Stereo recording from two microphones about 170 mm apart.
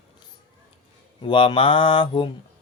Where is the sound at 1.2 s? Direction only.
30° left (ahead or behind).